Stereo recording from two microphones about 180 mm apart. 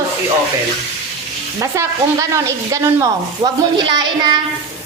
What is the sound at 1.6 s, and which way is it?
Speech, 15° right (ahead or behind).